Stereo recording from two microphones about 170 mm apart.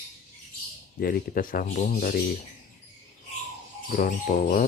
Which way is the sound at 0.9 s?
60° left (ahead or behind).